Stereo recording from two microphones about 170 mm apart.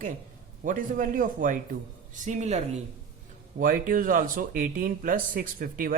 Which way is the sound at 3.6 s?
55° right (ahead or behind).